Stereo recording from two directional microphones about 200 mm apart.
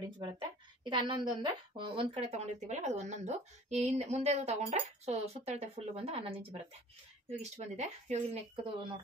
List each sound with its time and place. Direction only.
0.0 s a woman's voice: 25° right (ahead or behind)